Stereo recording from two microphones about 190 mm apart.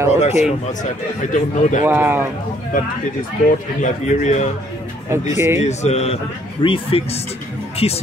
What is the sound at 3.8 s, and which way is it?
Speech, 40° left (ahead or behind).